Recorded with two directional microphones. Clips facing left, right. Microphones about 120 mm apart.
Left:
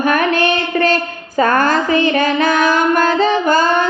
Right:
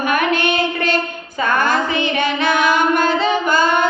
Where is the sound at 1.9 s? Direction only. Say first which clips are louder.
Left 5 dB; 40° left (ahead or behind).